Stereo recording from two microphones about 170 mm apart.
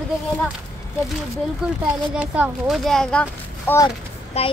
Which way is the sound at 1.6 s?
5° right (ahead or behind).